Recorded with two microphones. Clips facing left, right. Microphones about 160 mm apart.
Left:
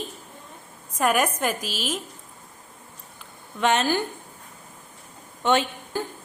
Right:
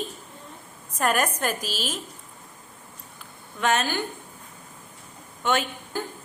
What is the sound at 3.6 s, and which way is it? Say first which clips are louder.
Speech: left 2 dB; 25° left (ahead or behind).